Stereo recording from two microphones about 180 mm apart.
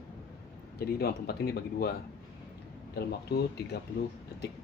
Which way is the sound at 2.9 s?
60° left (ahead or behind).